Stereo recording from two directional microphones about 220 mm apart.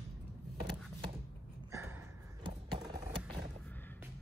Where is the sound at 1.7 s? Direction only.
10° right (ahead or behind).